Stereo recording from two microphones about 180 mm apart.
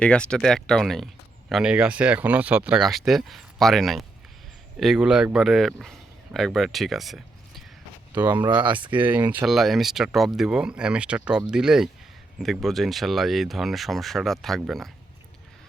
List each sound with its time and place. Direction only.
0.0 s speech: 5° left (ahead or behind)
8.1 s speech: 10° right (ahead or behind)
8.4 s speech: 25° right (ahead or behind)
9.0 s speech: 10° right (ahead or behind)